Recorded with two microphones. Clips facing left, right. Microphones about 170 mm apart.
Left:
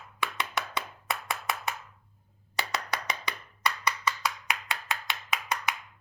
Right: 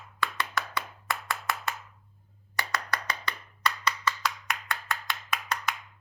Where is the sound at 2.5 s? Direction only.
20° left (ahead or behind).